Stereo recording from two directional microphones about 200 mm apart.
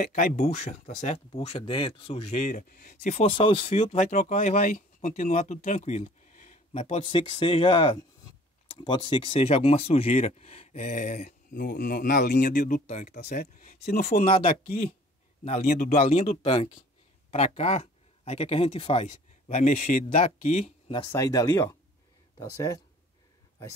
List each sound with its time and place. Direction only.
0.0 s speech: 45° left (ahead or behind)
3.3 s speech: 25° left (ahead or behind); by 14.2 s 45° left (ahead or behind)
15.4 s speech: 40° left (ahead or behind)
21.0 s speech: 15° left (ahead or behind)